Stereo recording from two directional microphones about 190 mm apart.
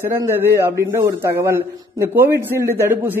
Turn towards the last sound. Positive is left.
turn(degrees=-10)  # may be behind; listen again after turning